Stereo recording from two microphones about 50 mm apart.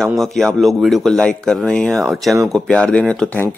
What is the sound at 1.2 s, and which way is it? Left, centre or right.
Speech, centre.